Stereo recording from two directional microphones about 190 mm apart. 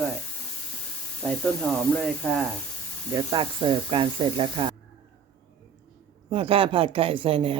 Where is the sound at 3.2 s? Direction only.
20° right (ahead or behind).